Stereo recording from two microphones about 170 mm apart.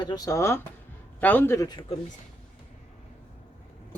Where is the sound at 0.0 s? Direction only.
20° left (ahead or behind).